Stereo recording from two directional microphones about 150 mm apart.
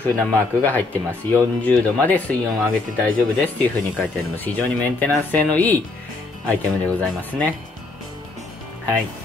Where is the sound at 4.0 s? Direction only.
10° left (ahead or behind).